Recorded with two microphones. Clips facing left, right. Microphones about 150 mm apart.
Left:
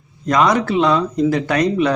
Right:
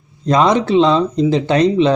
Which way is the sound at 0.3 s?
25° right (ahead or behind).